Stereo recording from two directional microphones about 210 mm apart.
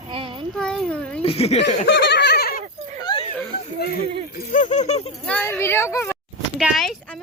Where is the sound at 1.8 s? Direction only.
55° left (ahead or behind).